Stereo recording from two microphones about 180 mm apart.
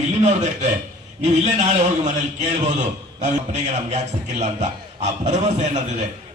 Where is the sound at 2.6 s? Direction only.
40° right (ahead or behind).